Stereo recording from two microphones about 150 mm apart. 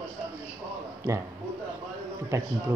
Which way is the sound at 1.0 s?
15° right (ahead or behind).